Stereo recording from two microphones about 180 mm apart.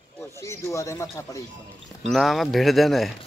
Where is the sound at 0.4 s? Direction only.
15° left (ahead or behind).